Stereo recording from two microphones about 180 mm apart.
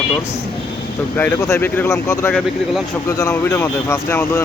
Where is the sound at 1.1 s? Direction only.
10° left (ahead or behind).